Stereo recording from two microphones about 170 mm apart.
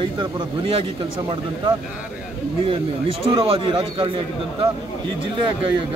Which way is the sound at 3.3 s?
30° right (ahead or behind).